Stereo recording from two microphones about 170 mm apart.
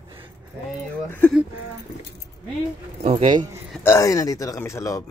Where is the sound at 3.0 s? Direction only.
35° right (ahead or behind).